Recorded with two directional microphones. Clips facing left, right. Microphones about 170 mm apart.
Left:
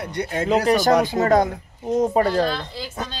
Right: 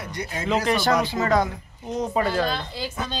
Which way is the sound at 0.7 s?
40° left (ahead or behind).